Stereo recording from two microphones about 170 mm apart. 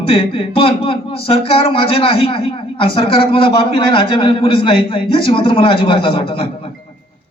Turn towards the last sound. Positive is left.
turn(degrees=30)  # may be behind; listen again after turning